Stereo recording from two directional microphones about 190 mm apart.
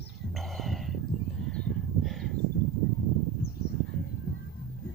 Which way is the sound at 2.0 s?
Centre (ahead or behind).